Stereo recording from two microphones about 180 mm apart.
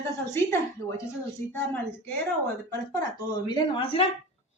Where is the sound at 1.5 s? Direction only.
10° left (ahead or behind).